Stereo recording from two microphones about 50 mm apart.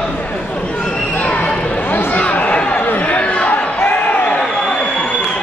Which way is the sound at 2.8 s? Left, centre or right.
Left.